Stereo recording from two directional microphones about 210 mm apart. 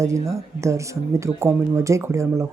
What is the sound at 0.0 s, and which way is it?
Speech, 15° right (ahead or behind).